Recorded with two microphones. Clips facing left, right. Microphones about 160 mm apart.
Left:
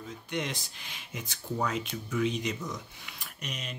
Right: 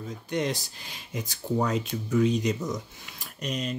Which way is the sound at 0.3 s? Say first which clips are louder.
Right 6 dB; 40° right (ahead or behind).